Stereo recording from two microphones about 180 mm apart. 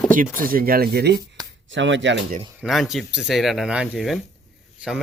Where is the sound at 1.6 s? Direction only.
90° right.